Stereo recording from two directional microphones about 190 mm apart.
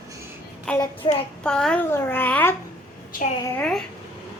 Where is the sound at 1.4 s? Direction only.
5° left (ahead or behind).